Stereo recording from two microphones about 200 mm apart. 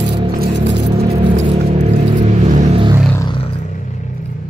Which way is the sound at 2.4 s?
35° right (ahead or behind).